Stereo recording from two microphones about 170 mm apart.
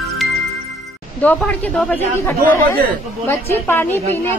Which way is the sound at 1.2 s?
10° left (ahead or behind).